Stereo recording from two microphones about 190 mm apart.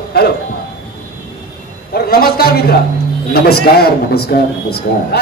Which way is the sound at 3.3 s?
55° left (ahead or behind).